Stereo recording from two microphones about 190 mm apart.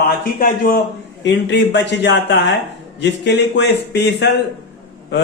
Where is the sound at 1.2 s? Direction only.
65° left (ahead or behind).